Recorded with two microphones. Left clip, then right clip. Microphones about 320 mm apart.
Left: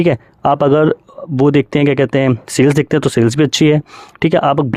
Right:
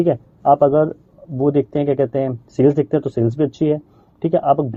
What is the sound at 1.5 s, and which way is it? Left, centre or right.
Speech, left.